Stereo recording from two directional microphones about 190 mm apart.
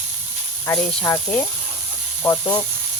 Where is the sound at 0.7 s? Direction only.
15° left (ahead or behind).